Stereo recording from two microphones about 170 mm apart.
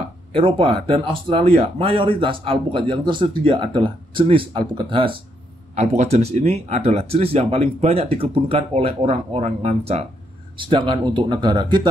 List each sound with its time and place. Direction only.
0.3 s speech: 30° right (ahead or behind)
5.8 s speech: 40° right (ahead or behind); by 11.9 s 25° right (ahead or behind)